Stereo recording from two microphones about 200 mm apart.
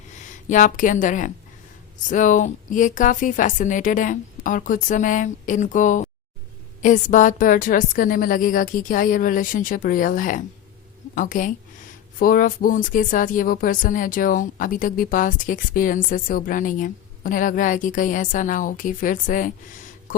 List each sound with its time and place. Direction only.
0.3 s a woman's voice: 40° left (ahead or behind)